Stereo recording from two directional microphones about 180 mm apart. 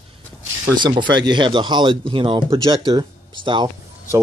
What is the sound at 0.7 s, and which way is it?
Speech, 25° right (ahead or behind).